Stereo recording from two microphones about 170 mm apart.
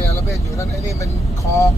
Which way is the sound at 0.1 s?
15° left (ahead or behind).